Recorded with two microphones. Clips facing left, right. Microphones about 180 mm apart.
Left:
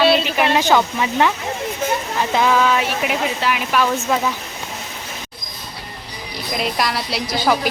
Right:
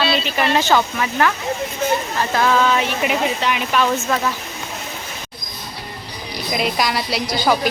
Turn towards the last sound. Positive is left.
turn(degrees=0)  # may be behind; listen again after turning